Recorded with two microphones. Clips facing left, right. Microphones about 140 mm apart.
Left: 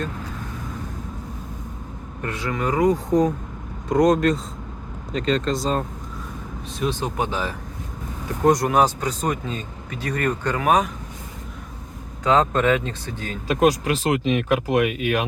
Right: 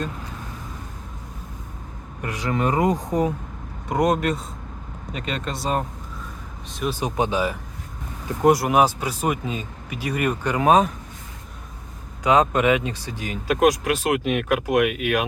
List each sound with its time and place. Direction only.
2.2 s speech: 15° right (ahead or behind)
3.1 s speech: 10° right (ahead or behind)
7.0 s speech: 15° right (ahead or behind)
10.6 s speech: 25° right (ahead or behind)
12.2 s speech: 15° right (ahead or behind)
13.5 s speech: centre (ahead or behind)